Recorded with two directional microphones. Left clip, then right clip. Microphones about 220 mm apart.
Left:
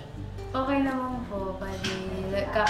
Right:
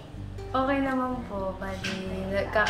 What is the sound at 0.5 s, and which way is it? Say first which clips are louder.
Speech: right 3 dB; 10° right (ahead or behind).